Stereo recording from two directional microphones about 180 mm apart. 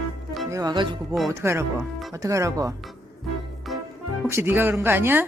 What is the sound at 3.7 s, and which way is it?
Music, centre (ahead or behind).